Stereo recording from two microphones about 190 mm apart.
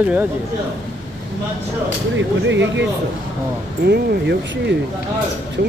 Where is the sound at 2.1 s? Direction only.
70° right (ahead or behind).